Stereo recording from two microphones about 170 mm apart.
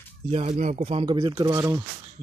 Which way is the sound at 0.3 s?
40° right (ahead or behind).